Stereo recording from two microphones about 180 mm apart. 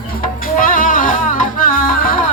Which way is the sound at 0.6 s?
50° left (ahead or behind).